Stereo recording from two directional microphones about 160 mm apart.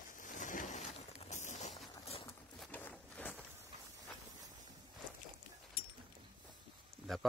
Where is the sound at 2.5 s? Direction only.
Centre (ahead or behind).